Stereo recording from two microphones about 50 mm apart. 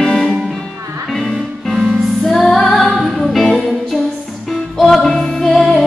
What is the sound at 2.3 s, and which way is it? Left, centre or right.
Music, centre.